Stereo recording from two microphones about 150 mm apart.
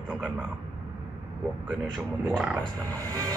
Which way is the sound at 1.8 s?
5° right (ahead or behind).